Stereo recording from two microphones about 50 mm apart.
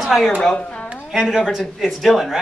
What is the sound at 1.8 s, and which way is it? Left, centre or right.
Speech, centre.